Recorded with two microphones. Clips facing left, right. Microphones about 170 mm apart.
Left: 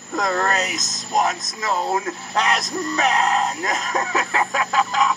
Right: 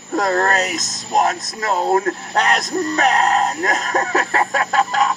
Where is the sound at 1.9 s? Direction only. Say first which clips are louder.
Right 6 dB; 50° right (ahead or behind).